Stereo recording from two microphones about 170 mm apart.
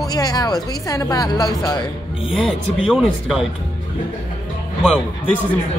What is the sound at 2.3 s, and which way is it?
Speech, centre (ahead or behind).